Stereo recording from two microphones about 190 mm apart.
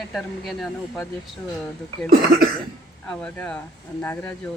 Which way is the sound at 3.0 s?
5° left (ahead or behind).